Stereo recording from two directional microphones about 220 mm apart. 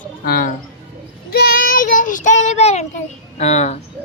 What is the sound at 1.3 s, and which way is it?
Child singing, 45° left (ahead or behind).